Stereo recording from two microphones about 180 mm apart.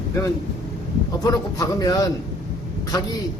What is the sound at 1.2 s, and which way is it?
Speech, 20° left (ahead or behind).